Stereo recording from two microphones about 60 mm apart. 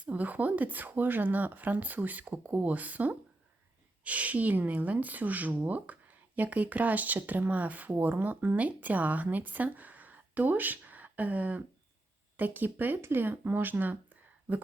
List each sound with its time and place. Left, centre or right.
0.0 s a woman's voice: right